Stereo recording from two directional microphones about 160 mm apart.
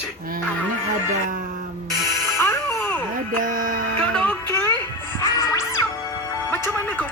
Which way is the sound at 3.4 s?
60° right (ahead or behind).